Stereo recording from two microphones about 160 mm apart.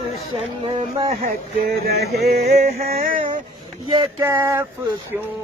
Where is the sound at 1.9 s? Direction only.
85° right.